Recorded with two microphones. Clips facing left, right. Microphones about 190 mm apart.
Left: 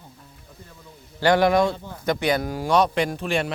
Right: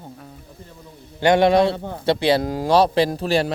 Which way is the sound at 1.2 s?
25° right (ahead or behind).